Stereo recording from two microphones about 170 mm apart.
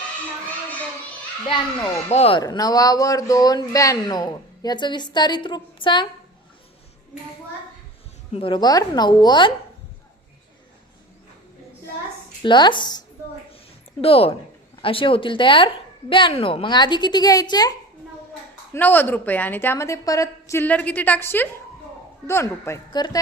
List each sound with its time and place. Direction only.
2.0 s speech: 35° left (ahead or behind)
2.4 s speech: 20° left (ahead or behind)
8.3 s speech: 30° left (ahead or behind)
12.4 s speech: 25° left (ahead or behind)
14.0 s speech: 35° left (ahead or behind)
18.7 s a woman's voice: 10° left (ahead or behind)